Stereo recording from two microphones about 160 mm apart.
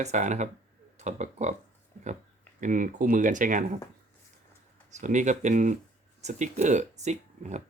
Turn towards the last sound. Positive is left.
turn(degrees=-45)  # may be behind; listen again after turning